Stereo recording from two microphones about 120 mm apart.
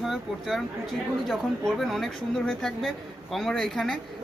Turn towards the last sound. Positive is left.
turn(degrees=5)  # may be behind; listen again after turning